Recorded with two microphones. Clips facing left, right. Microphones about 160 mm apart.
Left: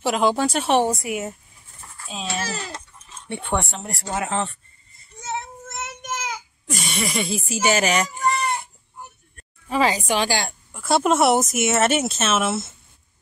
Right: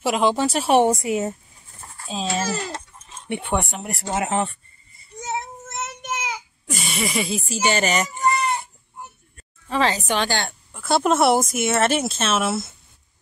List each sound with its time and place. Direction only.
0.0 s speech: centre (ahead or behind)
1.0 s speech: 30° right (ahead or behind)
3.3 s speech: 15° right (ahead or behind)
6.2 s speech: centre (ahead or behind)
9.7 s a woman's voice: 10° left (ahead or behind)